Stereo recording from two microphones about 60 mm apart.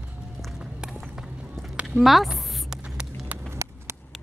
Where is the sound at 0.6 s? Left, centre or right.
Centre.